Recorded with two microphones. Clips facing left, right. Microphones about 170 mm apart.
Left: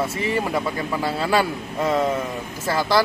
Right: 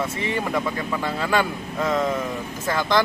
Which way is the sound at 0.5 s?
10° left (ahead or behind).